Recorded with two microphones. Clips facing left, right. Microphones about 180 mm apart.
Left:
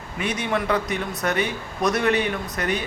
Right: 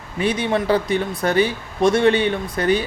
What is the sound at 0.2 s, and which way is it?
A man's voice, 30° right (ahead or behind).